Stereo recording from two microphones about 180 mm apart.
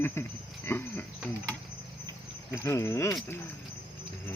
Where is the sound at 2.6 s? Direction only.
15° left (ahead or behind).